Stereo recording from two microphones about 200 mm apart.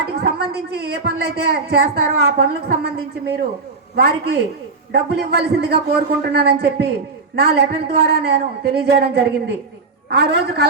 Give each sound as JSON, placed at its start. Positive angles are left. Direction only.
{"t": 0.1, "sound": "speech", "side_deg": -55}